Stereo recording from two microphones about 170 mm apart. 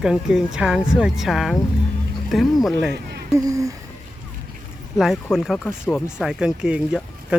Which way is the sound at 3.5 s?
20° right (ahead or behind).